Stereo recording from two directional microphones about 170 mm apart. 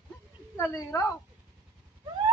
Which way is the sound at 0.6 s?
15° left (ahead or behind).